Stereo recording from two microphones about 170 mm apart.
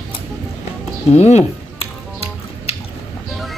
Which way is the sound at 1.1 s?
40° left (ahead or behind).